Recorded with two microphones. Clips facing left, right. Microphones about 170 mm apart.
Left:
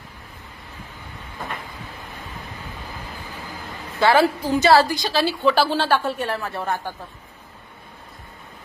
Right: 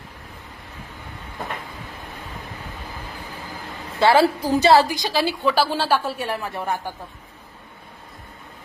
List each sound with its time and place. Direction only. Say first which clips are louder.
4.0 s a woman's voice: right 1 dB; 25° right (ahead or behind)
4.7 s a woman's voice: left 1 dB; 20° right (ahead or behind)